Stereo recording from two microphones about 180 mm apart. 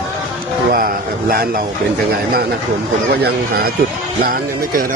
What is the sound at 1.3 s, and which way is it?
Speech, 55° right (ahead or behind).